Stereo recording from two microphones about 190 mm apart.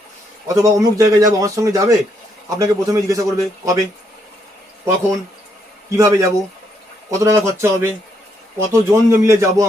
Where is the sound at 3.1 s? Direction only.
15° right (ahead or behind).